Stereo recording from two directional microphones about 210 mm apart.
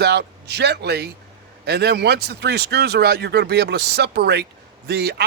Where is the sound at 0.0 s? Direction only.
50° right (ahead or behind).